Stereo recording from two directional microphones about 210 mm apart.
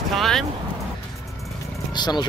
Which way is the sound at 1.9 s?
20° left (ahead or behind).